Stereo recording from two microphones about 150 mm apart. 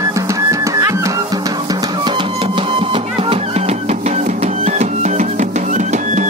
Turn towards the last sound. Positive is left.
turn(degrees=-55)  # may be behind; listen again after turning